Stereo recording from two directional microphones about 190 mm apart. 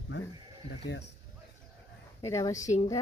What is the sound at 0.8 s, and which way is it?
Speech, 65° left (ahead or behind).